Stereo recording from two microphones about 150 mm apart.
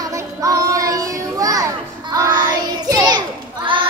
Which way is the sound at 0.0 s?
20° right (ahead or behind).